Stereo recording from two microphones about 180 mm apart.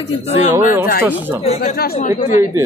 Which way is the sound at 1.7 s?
60° left (ahead or behind).